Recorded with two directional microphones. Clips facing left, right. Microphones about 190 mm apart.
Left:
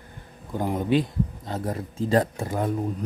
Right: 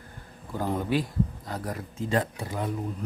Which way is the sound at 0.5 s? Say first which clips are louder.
Left 4 dB; 20° left (ahead or behind).